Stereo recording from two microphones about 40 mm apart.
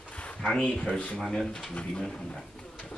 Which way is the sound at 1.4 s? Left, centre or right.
Centre.